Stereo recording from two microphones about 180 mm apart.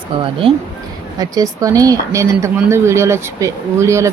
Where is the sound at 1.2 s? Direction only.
20° right (ahead or behind).